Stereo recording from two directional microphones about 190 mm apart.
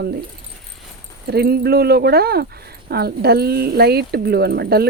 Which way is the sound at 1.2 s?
60° right (ahead or behind).